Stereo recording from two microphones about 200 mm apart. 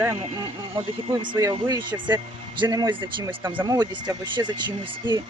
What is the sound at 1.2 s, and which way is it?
Speech, 20° right (ahead or behind).